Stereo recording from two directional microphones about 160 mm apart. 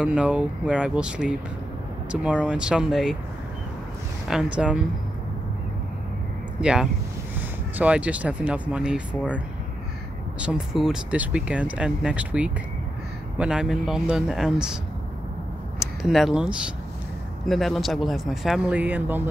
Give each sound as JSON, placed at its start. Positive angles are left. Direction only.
{"t": 0.0, "sound": "speech", "side_deg": -5}
{"t": 4.3, "sound": "speech", "side_deg": -5}
{"t": 6.6, "sound": "speech", "side_deg": -5}
{"t": 10.4, "sound": "speech", "side_deg": -5}
{"t": 15.8, "sound": "speech", "side_deg": 0}